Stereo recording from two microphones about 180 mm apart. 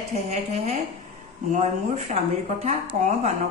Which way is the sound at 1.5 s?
40° right (ahead or behind).